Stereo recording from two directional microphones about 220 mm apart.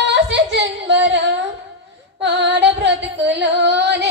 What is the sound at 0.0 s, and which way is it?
Singing, 55° right (ahead or behind).